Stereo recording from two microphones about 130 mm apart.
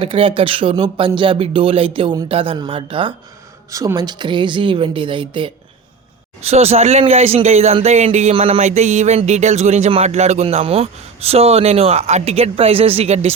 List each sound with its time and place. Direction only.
0.0 s speech: 45° right (ahead or behind)
3.7 s a woman's voice: 25° right (ahead or behind)
6.4 s speech: 50° right (ahead or behind)